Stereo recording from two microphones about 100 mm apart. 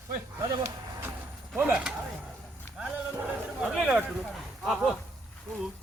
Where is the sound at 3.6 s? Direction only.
5° right (ahead or behind).